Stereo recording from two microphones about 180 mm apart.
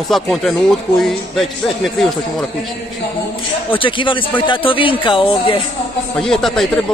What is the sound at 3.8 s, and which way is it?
Speech, 30° left (ahead or behind).